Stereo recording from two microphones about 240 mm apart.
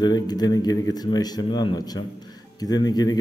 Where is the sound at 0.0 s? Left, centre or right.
Centre.